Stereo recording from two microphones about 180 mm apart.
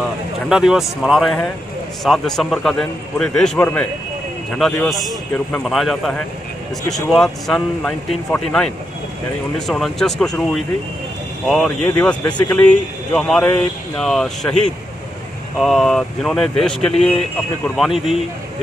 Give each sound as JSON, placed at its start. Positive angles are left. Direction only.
{"t": 0.5, "sound": "speech", "side_deg": -5}
{"t": 12.3, "sound": "speech", "side_deg": 25}
{"t": 12.5, "sound": "speech", "side_deg": 5}